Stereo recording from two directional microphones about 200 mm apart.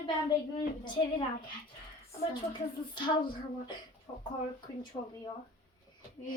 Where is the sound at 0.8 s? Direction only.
25° left (ahead or behind).